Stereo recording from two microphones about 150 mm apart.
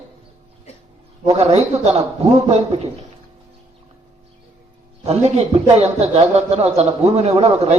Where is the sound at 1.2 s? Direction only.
45° right (ahead or behind).